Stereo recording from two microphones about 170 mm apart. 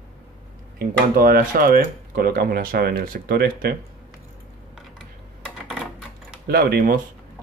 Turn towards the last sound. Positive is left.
turn(degrees=-55)  # may be behind; listen again after turning